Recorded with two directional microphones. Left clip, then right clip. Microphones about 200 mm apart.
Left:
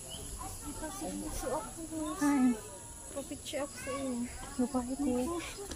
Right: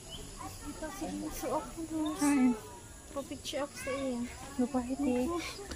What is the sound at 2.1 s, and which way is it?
Speech, 15° right (ahead or behind).